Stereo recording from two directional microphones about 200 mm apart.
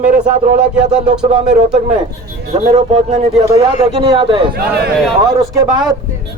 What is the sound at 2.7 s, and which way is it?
Speech, 35° right (ahead or behind).